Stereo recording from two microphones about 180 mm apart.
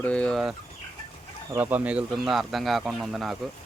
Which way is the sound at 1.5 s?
10° right (ahead or behind).